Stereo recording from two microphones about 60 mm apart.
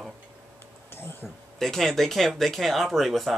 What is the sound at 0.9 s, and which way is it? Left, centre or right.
Speech, left.